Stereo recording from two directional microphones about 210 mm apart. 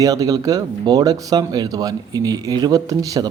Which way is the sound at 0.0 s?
15° right (ahead or behind).